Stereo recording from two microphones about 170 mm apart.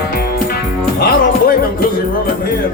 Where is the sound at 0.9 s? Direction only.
65° left (ahead or behind).